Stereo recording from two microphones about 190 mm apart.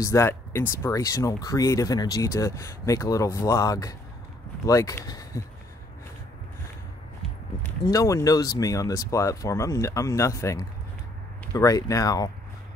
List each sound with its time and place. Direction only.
0.0 s speech: 15° left (ahead or behind)
7.8 s speech: 15° left (ahead or behind)